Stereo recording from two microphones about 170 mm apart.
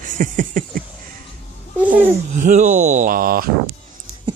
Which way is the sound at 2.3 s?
45° right (ahead or behind).